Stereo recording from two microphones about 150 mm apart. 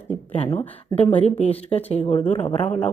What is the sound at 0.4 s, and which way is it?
Speech, 15° left (ahead or behind).